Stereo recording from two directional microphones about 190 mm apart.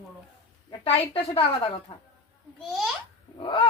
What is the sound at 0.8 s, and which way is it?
A woman's voice, 30° left (ahead or behind).